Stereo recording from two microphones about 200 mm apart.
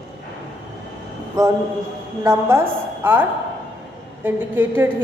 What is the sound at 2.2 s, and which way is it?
A woman's voice, 10° right (ahead or behind).